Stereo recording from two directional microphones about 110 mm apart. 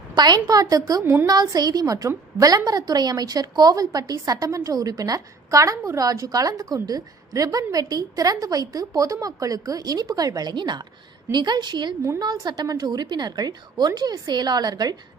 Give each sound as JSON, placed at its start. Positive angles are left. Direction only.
{"t": 0.1, "sound": "a woman's voice", "side_deg": -40}